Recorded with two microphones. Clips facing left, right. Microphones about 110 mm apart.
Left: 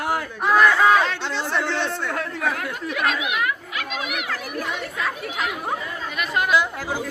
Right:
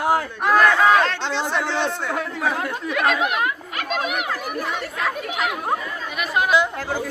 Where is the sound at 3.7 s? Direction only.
45° right (ahead or behind).